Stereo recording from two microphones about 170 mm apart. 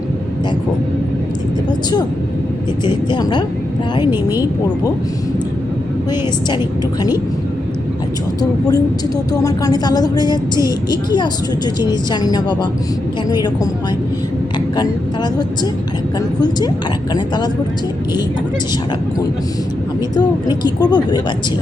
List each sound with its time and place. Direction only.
2.8 s speech: 25° left (ahead or behind)
4.1 s speech: 15° right (ahead or behind)
8.4 s speech: 20° left (ahead or behind)
14.8 s speech: 25° left (ahead or behind)
20.8 s speech: 25° left (ahead or behind)